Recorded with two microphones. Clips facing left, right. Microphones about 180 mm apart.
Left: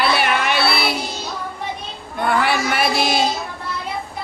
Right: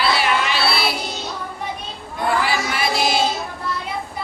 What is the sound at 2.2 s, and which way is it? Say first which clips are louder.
Child singing: left 2 dB; 60° left (ahead or behind).